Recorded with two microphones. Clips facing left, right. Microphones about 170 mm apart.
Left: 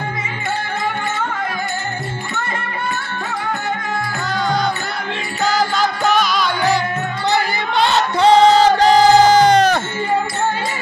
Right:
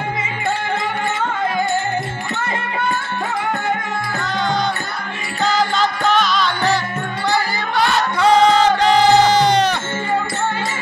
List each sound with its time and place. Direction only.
5.4 s music: 5° left (ahead or behind)
7.2 s music: 20° left (ahead or behind); by 9.8 s 45° left (ahead or behind)